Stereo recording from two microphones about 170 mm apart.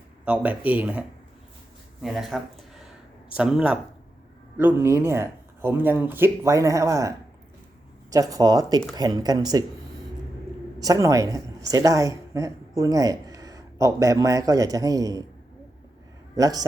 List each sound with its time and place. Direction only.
0.3 s speech: 10° right (ahead or behind)
8.1 s speech: 20° right (ahead or behind)
10.8 s speech: 20° right (ahead or behind)
16.3 s speech: 20° right (ahead or behind)